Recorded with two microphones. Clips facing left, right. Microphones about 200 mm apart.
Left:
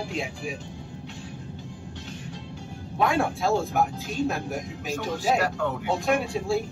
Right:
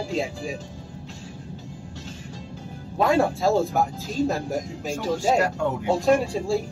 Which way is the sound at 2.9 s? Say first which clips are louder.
Right 4 dB; 40° right (ahead or behind).